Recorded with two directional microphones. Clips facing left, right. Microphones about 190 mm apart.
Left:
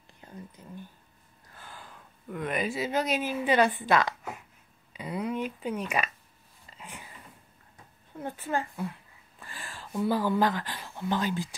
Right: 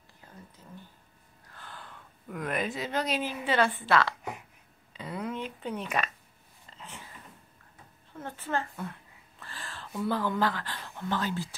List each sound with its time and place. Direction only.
0.2 s whispering: 25° left (ahead or behind)
0.6 s a woman's voice: 15° left (ahead or behind)
6.8 s a sound: 15° left (ahead or behind)
8.2 s a woman's voice: 15° left (ahead or behind)